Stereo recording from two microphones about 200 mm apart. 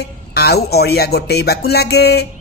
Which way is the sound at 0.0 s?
50° left (ahead or behind).